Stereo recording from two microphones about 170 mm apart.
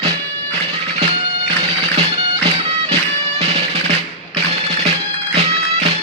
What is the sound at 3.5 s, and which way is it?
Music, 40° right (ahead or behind).